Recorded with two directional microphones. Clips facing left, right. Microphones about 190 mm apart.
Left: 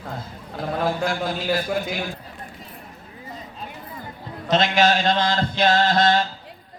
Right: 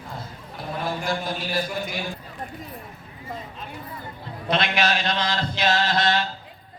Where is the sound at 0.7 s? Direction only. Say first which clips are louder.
Left 4 dB; 75° left (ahead or behind).